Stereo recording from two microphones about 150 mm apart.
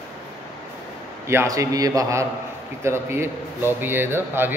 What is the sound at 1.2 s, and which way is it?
A man's voice, 20° right (ahead or behind).